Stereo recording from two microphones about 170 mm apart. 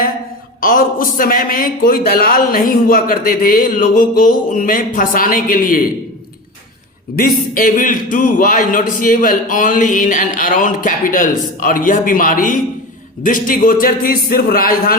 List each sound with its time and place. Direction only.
0.6 s speech: 55° left (ahead or behind)
7.2 s a man's voice: 55° left (ahead or behind)